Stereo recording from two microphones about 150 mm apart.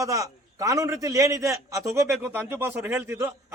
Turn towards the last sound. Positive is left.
turn(degrees=-15)  # may be behind; listen again after turning